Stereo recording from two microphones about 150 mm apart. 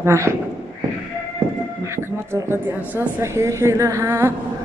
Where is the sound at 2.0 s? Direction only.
15° right (ahead or behind).